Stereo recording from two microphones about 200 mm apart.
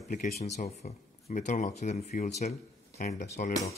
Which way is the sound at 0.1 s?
40° left (ahead or behind).